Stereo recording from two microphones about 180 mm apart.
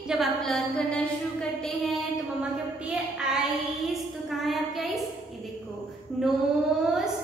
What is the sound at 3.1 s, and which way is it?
A woman's voice, 5° right (ahead or behind).